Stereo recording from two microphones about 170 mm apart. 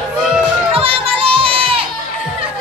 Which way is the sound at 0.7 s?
35° right (ahead or behind).